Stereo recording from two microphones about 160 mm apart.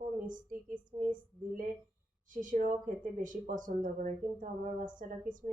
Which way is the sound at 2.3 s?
55° right (ahead or behind).